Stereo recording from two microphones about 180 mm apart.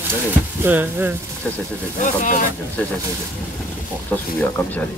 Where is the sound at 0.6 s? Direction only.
10° right (ahead or behind).